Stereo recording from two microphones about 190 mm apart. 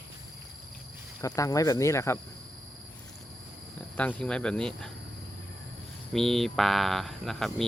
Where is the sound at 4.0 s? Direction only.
5° left (ahead or behind).